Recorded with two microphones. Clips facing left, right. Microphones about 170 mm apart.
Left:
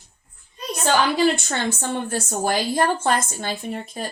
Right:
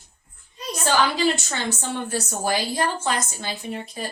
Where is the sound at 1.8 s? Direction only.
50° left (ahead or behind).